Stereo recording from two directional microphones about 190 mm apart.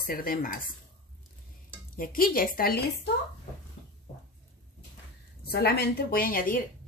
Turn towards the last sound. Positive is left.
turn(degrees=50)  # may be behind; listen again after turning